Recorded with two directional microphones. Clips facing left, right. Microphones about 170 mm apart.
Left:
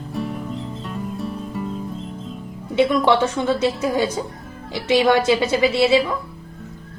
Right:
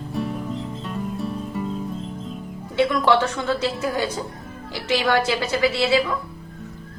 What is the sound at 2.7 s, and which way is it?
Speech, 20° left (ahead or behind).